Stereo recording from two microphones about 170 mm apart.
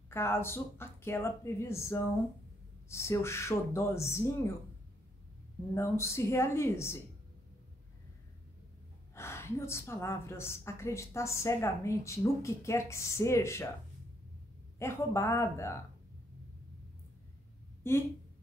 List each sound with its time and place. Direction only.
0.1 s a woman's voice: 15° left (ahead or behind)
5.8 s a woman's voice: 15° left (ahead or behind)
9.1 s a woman's voice: 15° left (ahead or behind)
14.8 s a woman's voice: 15° left (ahead or behind)
17.8 s a woman's voice: 15° left (ahead or behind)